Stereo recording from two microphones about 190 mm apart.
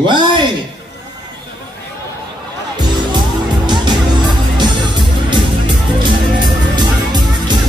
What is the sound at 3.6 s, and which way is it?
Music, 25° right (ahead or behind).